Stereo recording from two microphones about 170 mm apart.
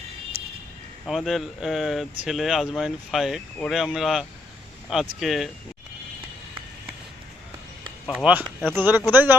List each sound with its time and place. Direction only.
1.0 s speech: centre (ahead or behind)
8.0 s speech: 5° right (ahead or behind)